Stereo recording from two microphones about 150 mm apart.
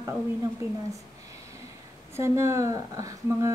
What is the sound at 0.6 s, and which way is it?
Speech, 20° right (ahead or behind).